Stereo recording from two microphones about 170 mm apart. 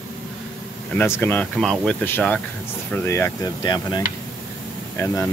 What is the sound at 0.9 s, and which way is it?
Speech, 10° left (ahead or behind).